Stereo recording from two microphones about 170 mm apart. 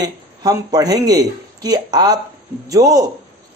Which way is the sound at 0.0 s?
20° right (ahead or behind).